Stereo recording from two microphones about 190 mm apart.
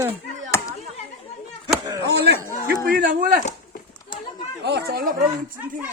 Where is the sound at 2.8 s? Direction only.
45° right (ahead or behind).